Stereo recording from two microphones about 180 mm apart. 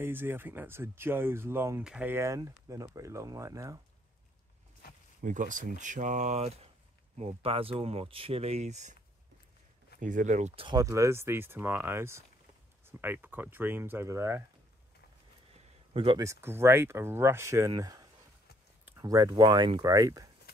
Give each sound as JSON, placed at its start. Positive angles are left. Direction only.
{"t": 0.0, "sound": "speech", "side_deg": -10}
{"t": 5.2, "sound": "speech", "side_deg": -45}
{"t": 9.9, "sound": "speech", "side_deg": -45}
{"t": 15.9, "sound": "speech", "side_deg": -30}
{"t": 16.3, "sound": "speech", "side_deg": -15}